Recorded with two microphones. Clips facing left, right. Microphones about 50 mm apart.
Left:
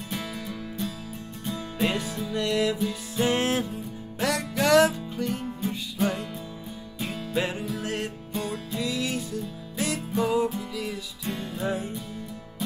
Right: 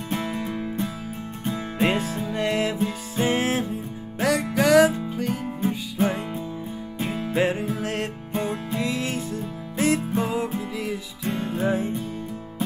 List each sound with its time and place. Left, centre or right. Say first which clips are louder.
0.1 s music: right 7 dB; right
4.6 s music: right 2 dB; centre
4.9 s music: right 3 dB; right
7.8 s music: right 3 dB; right